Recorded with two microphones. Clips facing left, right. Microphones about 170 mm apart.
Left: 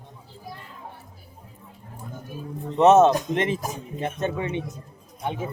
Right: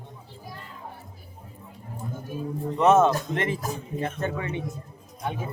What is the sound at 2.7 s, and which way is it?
Speech, 25° left (ahead or behind).